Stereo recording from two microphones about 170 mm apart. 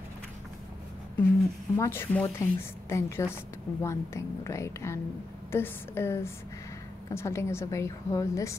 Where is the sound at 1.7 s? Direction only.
15° left (ahead or behind).